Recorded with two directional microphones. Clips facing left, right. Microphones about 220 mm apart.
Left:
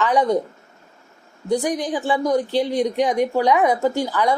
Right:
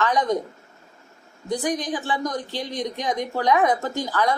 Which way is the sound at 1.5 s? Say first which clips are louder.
Left 4 dB; 15° left (ahead or behind).